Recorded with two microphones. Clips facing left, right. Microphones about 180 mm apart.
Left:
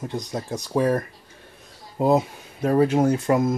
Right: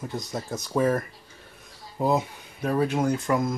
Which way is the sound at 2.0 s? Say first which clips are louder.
Left 5 dB; 35° left (ahead or behind).